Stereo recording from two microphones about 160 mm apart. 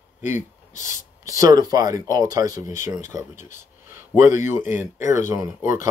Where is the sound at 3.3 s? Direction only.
50° left (ahead or behind).